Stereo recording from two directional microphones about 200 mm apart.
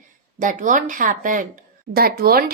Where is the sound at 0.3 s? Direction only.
40° right (ahead or behind).